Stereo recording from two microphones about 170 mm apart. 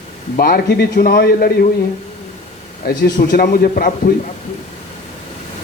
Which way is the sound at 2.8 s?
60° left (ahead or behind).